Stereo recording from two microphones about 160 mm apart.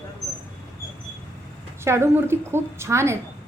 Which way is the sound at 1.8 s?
15° right (ahead or behind).